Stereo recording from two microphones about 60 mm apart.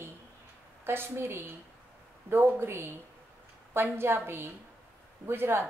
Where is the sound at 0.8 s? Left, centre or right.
Right.